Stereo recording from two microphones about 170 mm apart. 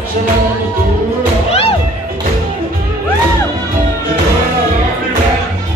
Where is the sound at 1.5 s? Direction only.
35° left (ahead or behind).